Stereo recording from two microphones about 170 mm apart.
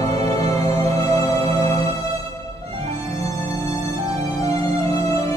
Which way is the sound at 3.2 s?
20° left (ahead or behind).